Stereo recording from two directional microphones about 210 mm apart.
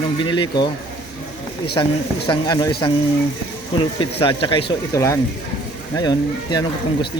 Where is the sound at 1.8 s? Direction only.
20° left (ahead or behind).